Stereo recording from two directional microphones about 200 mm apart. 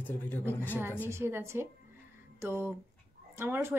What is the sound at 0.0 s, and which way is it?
Speech, 10° left (ahead or behind).